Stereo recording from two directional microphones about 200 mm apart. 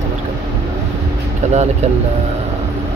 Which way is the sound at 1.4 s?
35° right (ahead or behind).